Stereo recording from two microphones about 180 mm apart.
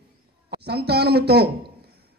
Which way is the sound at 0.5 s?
65° right (ahead or behind).